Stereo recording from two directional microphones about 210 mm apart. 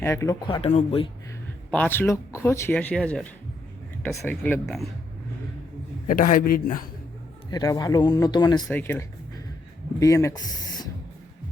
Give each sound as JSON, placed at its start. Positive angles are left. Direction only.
{"t": 0.0, "sound": "speech", "side_deg": 15}
{"t": 0.4, "sound": "speech", "side_deg": 25}
{"t": 1.7, "sound": "speech", "side_deg": 10}
{"t": 6.1, "sound": "a man's voice", "side_deg": 40}
{"t": 7.5, "sound": "speech", "side_deg": 15}
{"t": 8.6, "sound": "speech", "side_deg": 10}